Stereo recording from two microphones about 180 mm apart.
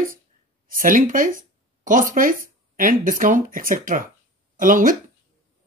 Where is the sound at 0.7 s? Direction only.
50° right (ahead or behind).